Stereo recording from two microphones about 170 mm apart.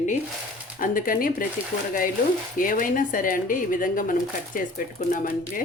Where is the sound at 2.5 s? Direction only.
55° left (ahead or behind).